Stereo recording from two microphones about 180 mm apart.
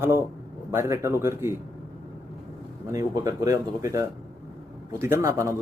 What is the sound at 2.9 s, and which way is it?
A man's voice, 15° right (ahead or behind).